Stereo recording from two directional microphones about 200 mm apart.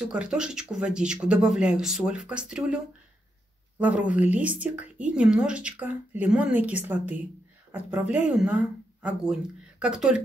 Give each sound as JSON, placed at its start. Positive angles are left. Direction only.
{"t": 0.0, "sound": "speech", "side_deg": -5}
{"t": 3.8, "sound": "speech", "side_deg": -5}